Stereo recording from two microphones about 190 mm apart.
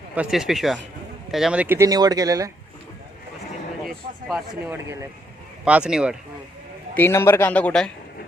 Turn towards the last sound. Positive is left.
turn(degrees=5)  # may be behind; listen again after turning